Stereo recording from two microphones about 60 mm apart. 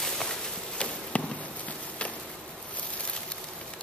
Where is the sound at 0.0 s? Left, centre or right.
Centre.